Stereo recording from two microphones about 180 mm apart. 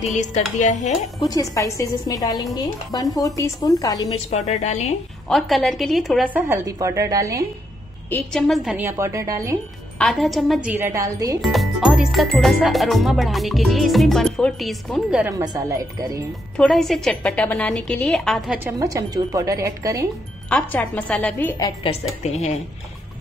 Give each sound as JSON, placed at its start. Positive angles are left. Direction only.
{"t": 0.6, "sound": "a woman's voice", "side_deg": 40}
{"t": 1.2, "sound": "speech", "side_deg": 20}
{"t": 4.3, "sound": "a woman's voice", "side_deg": 40}
{"t": 5.3, "sound": "speech", "side_deg": 0}
{"t": 6.3, "sound": "a woman's voice", "side_deg": -15}
{"t": 8.1, "sound": "speech", "side_deg": 10}
{"t": 8.8, "sound": "a woman's voice", "side_deg": -15}
{"t": 9.9, "sound": "a woman's voice", "side_deg": 0}
{"t": 11.4, "sound": "speech", "side_deg": 0}
{"t": 15.2, "sound": "a woman's voice", "side_deg": -20}
{"t": 16.5, "sound": "speech", "side_deg": 0}
{"t": 18.6, "sound": "a woman's voice", "side_deg": -20}
{"t": 20.4, "sound": "a woman's voice", "side_deg": 10}
{"t": 21.5, "sound": "speech", "side_deg": 20}